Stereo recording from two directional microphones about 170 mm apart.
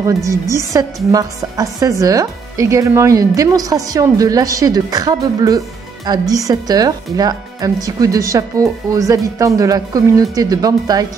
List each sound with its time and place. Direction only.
0.0 s speech: 20° right (ahead or behind)